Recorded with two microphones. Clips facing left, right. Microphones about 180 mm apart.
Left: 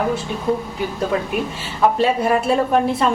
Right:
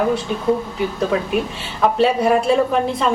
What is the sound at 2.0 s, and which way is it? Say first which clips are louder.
Speech: right 2 dB; centre (ahead or behind).